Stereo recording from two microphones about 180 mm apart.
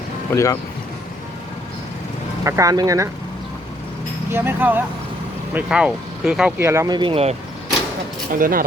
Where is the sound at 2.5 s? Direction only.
20° right (ahead or behind).